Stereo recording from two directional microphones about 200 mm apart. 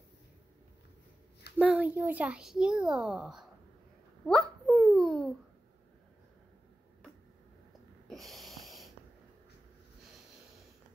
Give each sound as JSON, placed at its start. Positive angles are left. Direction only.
{"t": 1.6, "sound": "a child's voice", "side_deg": -5}
{"t": 4.3, "sound": "babbling", "side_deg": 0}
{"t": 8.1, "sound": "snort", "side_deg": 0}